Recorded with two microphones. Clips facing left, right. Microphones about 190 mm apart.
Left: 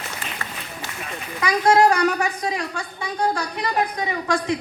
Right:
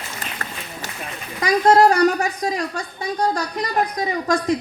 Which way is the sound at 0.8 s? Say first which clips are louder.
Right 1 dB; 45° right (ahead or behind).